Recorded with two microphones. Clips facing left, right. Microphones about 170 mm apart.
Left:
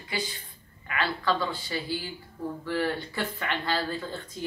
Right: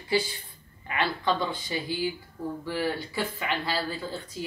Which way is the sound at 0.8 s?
25° right (ahead or behind).